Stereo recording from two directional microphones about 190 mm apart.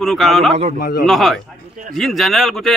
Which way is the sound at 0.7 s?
50° left (ahead or behind).